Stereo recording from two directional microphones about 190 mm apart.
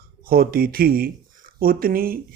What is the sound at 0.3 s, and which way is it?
Speech, 50° right (ahead or behind).